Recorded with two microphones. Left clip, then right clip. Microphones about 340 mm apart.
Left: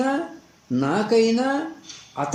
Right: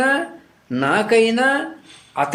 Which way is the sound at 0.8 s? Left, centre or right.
Right.